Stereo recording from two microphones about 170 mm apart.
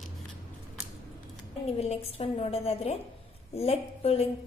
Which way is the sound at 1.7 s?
35° left (ahead or behind).